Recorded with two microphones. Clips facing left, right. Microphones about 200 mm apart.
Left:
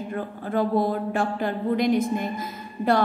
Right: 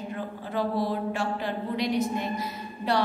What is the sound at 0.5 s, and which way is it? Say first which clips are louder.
A woman's voice: left 5 dB; 50° left (ahead or behind).